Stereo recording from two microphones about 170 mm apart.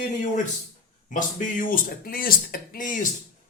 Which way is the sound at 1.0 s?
50° left (ahead or behind).